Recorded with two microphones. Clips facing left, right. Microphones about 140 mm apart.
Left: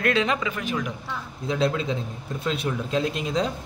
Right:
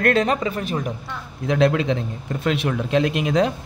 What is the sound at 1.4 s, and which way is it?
Speech, 65° right (ahead or behind).